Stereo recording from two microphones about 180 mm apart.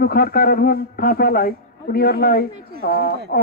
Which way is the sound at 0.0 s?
55° left (ahead or behind).